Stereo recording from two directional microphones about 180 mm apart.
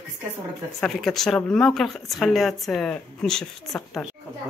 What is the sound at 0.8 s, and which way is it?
Speech, centre (ahead or behind).